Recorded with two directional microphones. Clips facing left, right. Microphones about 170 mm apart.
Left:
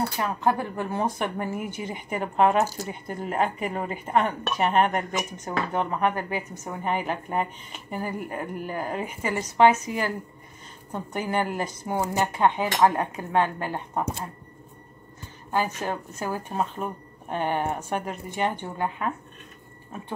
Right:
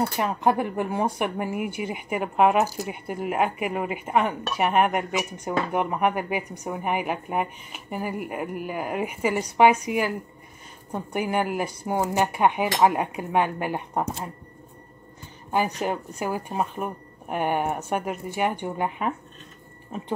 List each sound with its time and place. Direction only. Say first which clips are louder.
0.2 s speech: right 2 dB; 20° right (ahead or behind)
15.8 s speech: right 2 dB; 15° right (ahead or behind)